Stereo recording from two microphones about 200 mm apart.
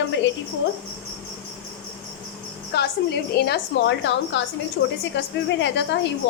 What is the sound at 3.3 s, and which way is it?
A woman's voice, 55° left (ahead or behind).